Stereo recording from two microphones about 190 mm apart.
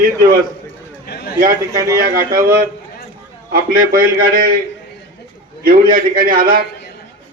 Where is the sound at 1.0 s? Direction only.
60° left (ahead or behind).